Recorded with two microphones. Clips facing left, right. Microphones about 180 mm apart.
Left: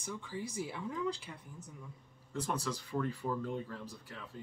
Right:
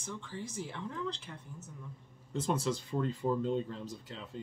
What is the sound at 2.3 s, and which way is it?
Speech, 25° right (ahead or behind).